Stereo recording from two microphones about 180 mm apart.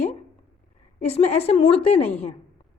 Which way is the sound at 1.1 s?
35° left (ahead or behind).